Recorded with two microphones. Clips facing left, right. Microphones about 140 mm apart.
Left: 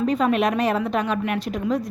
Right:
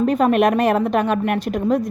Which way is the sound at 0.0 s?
50° right (ahead or behind).